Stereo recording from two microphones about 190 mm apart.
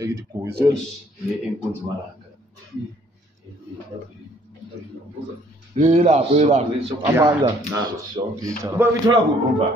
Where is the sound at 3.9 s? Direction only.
25° right (ahead or behind).